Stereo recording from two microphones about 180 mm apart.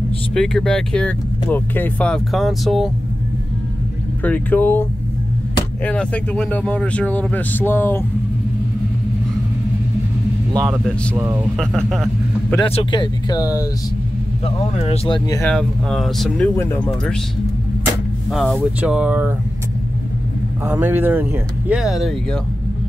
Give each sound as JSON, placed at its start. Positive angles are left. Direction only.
{"t": 0.3, "sound": "speech", "side_deg": 5}
{"t": 4.2, "sound": "speech", "side_deg": 10}
{"t": 5.9, "sound": "speech", "side_deg": 5}
{"t": 11.1, "sound": "speech", "side_deg": -15}
{"t": 11.5, "sound": "a man's voice", "side_deg": 0}
{"t": 12.6, "sound": "speech", "side_deg": 30}
{"t": 14.4, "sound": "speech", "side_deg": 35}
{"t": 15.4, "sound": "speech", "side_deg": 5}
{"t": 18.3, "sound": "speech", "side_deg": 0}
{"t": 20.6, "sound": "speech", "side_deg": -15}